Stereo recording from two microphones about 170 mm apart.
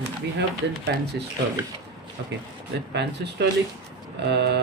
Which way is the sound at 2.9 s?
85° right.